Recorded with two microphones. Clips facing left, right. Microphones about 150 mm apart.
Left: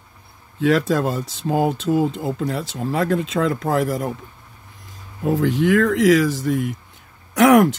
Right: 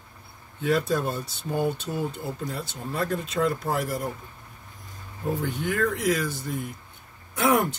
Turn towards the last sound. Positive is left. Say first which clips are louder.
# left 10 dB
turn(degrees=90)